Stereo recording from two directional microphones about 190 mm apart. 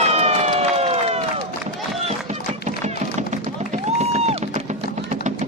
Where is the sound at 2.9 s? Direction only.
35° right (ahead or behind).